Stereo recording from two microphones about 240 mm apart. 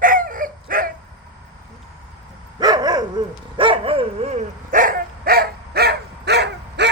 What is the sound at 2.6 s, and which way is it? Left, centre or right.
Dog, centre.